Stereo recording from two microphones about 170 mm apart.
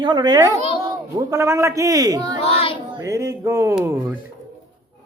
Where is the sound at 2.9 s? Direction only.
20° right (ahead or behind).